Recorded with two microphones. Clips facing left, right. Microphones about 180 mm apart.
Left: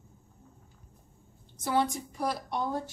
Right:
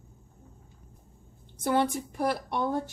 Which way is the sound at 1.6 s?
55° right (ahead or behind).